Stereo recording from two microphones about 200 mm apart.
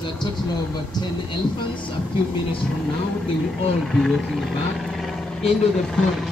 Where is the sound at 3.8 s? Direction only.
Centre (ahead or behind).